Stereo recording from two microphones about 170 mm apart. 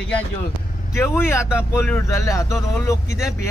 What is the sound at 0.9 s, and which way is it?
Speech, 15° left (ahead or behind).